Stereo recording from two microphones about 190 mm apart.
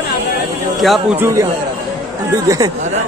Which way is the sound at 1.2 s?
15° right (ahead or behind).